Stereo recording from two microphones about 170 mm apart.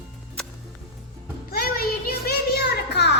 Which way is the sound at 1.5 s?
65° left (ahead or behind).